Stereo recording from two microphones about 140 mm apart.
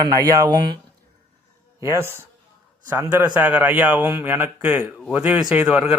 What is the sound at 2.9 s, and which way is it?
A man's voice, 15° right (ahead or behind).